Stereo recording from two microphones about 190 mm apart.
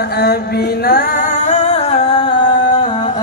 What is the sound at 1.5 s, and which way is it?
Music, 35° left (ahead or behind).